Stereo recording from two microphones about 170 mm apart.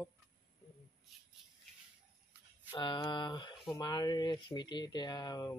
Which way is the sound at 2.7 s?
30° left (ahead or behind).